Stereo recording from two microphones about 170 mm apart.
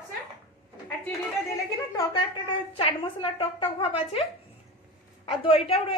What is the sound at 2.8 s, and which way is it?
A woman's voice, 35° left (ahead or behind).